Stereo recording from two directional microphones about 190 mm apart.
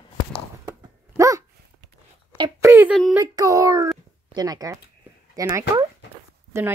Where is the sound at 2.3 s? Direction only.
25° right (ahead or behind).